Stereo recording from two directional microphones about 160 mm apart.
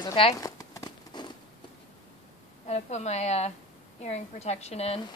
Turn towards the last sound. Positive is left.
turn(degrees=40)  # may be behind; listen again after turning